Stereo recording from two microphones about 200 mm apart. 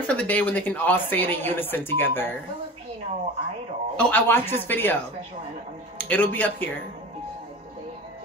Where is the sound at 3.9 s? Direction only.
10° left (ahead or behind).